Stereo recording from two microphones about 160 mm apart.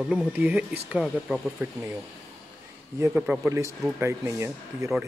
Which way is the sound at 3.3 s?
10° right (ahead or behind).